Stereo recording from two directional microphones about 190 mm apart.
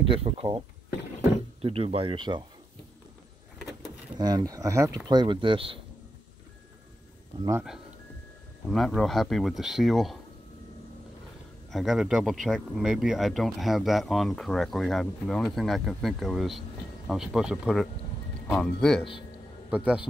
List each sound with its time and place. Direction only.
0.0 s speech: 30° right (ahead or behind)
4.2 s speech: 20° right (ahead or behind)
8.6 s speech: centre (ahead or behind)
11.7 s speech: centre (ahead or behind)